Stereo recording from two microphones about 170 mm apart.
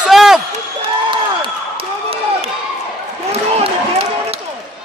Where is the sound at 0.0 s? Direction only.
Centre (ahead or behind).